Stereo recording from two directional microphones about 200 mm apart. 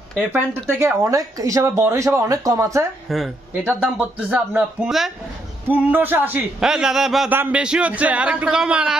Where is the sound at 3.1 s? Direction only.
5° right (ahead or behind).